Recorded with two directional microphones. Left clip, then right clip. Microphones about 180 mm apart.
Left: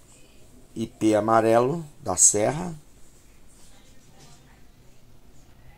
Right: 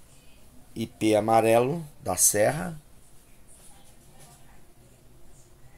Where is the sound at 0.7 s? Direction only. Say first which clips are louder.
Left 1 dB; 5° right (ahead or behind).